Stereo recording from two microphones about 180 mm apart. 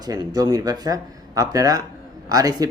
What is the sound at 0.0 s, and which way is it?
Speech, 20° right (ahead or behind).